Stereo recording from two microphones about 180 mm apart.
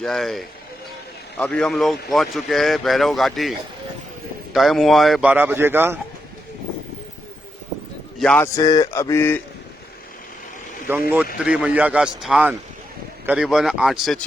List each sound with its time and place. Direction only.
0.0 s speech: centre (ahead or behind)
4.5 s speech: centre (ahead or behind)
8.2 s speech: 5° left (ahead or behind)
8.5 s mantra: 20° left (ahead or behind)
10.9 s speech: 10° right (ahead or behind)